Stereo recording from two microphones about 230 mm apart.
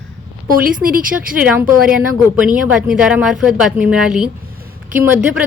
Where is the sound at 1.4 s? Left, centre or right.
Centre.